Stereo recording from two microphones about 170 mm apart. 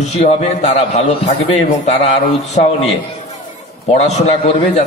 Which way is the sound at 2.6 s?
55° left (ahead or behind).